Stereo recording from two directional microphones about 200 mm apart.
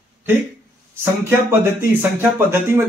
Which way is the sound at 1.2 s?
10° right (ahead or behind).